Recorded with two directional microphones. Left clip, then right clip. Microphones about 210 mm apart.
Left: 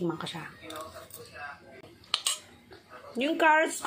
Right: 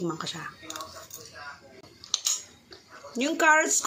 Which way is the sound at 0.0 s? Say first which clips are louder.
Right 1 dB; 15° right (ahead or behind).